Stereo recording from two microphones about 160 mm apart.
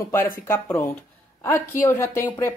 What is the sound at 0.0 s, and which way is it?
A woman's voice, 15° left (ahead or behind).